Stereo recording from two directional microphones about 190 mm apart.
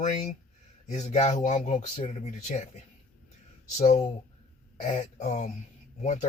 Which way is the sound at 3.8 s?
35° left (ahead or behind).